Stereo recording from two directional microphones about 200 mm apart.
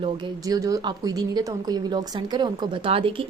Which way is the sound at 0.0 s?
20° right (ahead or behind).